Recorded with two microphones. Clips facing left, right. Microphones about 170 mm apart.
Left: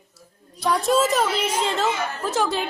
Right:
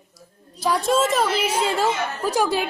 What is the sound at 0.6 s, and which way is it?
A woman's voice, centre (ahead or behind).